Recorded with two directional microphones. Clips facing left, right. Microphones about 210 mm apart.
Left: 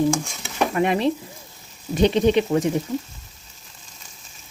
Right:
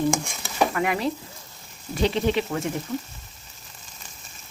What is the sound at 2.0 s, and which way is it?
Speech, 20° left (ahead or behind).